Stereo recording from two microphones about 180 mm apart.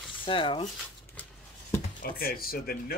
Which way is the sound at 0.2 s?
30° left (ahead or behind).